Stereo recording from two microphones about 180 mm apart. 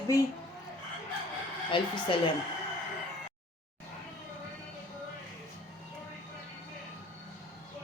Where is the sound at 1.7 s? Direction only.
30° left (ahead or behind).